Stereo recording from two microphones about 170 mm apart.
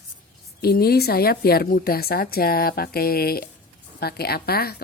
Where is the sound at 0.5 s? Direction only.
65° left (ahead or behind).